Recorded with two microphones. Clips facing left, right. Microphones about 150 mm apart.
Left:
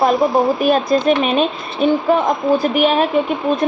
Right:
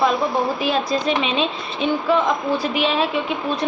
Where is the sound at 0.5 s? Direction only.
50° left (ahead or behind).